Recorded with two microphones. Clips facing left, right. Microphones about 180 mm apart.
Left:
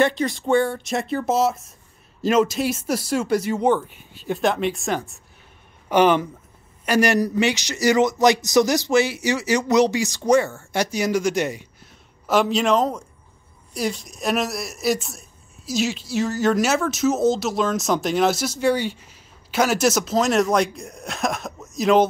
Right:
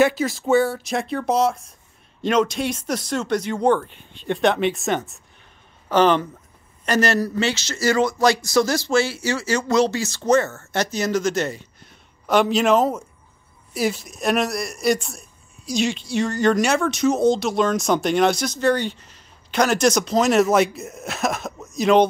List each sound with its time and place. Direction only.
0.0 s speech: 5° right (ahead or behind)
5.9 s speech: 10° left (ahead or behind)
12.3 s speech: centre (ahead or behind)